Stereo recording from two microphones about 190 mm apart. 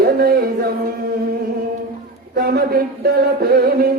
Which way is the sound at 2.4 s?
50° right (ahead or behind).